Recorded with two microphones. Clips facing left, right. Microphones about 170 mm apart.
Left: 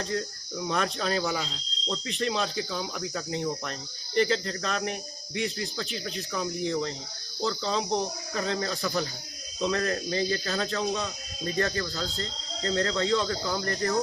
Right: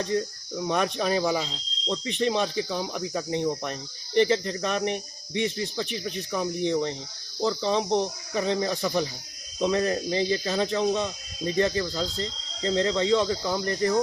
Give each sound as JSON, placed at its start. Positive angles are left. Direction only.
{"t": 0.0, "sound": "cricket", "side_deg": -15}
{"t": 6.7, "sound": "speech", "side_deg": -20}
{"t": 7.4, "sound": "cricket", "side_deg": -15}